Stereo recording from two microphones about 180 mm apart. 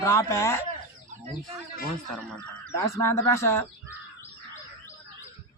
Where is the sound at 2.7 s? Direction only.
15° left (ahead or behind).